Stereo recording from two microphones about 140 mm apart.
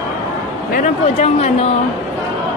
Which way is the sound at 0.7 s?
55° left (ahead or behind).